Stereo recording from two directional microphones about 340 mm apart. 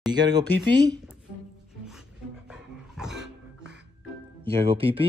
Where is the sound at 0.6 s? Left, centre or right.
Centre.